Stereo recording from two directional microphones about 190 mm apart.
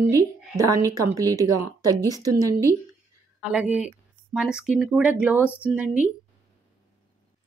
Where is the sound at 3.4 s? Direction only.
5° right (ahead or behind).